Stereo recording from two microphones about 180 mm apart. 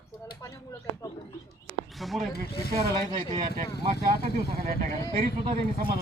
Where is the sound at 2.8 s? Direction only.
25° right (ahead or behind).